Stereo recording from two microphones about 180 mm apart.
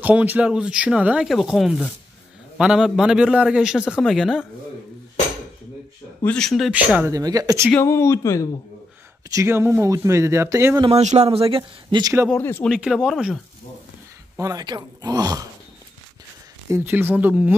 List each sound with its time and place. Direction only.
0.0 s a man's voice: 10° right (ahead or behind)
6.2 s speech: 5° left (ahead or behind); by 7.7 s 15° right (ahead or behind)
7.7 s speech: 15° left (ahead or behind)
9.3 s speech: 15° right (ahead or behind)
10.9 s speech: 40° right (ahead or behind)
12.3 s speech: 10° left (ahead or behind)
12.6 s a man's voice: 5° right (ahead or behind)
14.3 s speech: 20° right (ahead or behind)
16.7 s speech: 10° right (ahead or behind)